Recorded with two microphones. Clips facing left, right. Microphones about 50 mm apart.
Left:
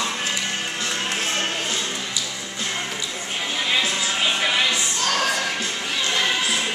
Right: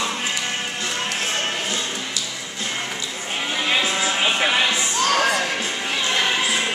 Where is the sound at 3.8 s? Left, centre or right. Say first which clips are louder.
Right 2 dB; centre.